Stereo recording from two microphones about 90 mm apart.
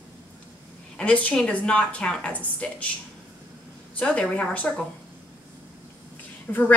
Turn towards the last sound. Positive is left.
turn(degrees=20)  # may be behind; listen again after turning